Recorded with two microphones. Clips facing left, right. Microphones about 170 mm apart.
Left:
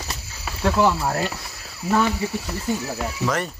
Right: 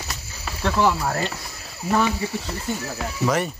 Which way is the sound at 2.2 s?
10° left (ahead or behind).